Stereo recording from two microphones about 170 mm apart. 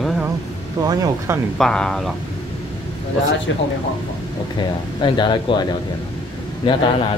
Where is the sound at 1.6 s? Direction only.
5° left (ahead or behind).